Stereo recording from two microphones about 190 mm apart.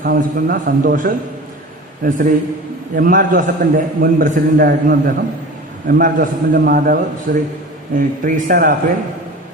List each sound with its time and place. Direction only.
0.0 s a man's voice: 50° right (ahead or behind)